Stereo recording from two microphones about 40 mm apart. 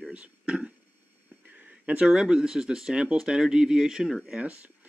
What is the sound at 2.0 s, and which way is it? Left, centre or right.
Speech, centre.